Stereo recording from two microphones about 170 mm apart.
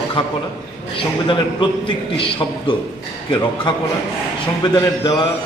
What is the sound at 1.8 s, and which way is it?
A man's voice, 30° left (ahead or behind).